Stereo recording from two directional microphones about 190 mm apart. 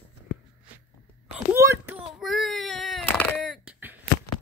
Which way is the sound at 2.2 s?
Centre (ahead or behind).